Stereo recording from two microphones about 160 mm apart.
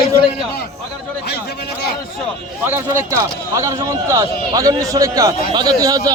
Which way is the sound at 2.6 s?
15° right (ahead or behind).